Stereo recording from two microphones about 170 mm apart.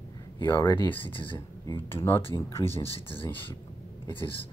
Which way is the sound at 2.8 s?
35° left (ahead or behind).